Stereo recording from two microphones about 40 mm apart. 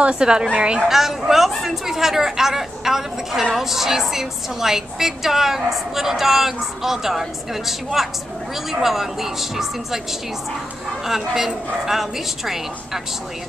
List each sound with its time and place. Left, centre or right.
0.0 s a woman's voice: right
0.8 s a woman's voice: centre
11.1 s a woman's voice: centre